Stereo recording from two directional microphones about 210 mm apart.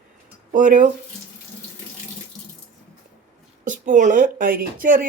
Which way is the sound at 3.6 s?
35° right (ahead or behind).